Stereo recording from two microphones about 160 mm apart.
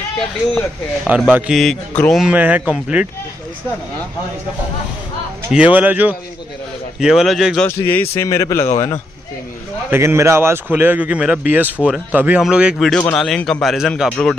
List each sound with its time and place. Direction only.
1.3 s a man's voice: centre (ahead or behind)
5.5 s a man's voice: 10° right (ahead or behind)
7.6 s a man's voice: 15° left (ahead or behind)
9.8 s a man's voice: 15° right (ahead or behind); by 14.3 s 5° left (ahead or behind)